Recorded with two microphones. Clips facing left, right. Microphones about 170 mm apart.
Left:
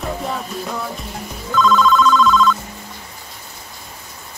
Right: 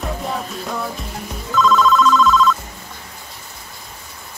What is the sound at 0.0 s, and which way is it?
Music, centre (ahead or behind).